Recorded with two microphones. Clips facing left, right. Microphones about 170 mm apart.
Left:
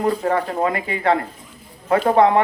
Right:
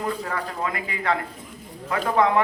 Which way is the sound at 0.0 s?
35° left (ahead or behind).